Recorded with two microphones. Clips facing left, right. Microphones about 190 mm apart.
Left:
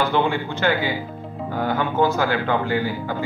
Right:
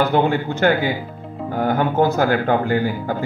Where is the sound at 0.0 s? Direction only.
45° right (ahead or behind).